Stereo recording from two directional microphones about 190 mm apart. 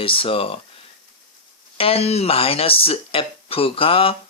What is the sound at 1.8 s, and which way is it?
Speech, 30° left (ahead or behind).